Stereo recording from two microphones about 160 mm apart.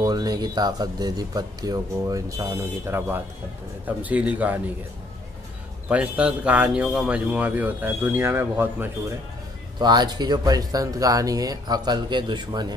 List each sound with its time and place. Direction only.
0.0 s speech: 25° right (ahead or behind); by 4.6 s 10° right (ahead or behind)
5.9 s speech: 10° right (ahead or behind)
9.8 s speech: 25° right (ahead or behind)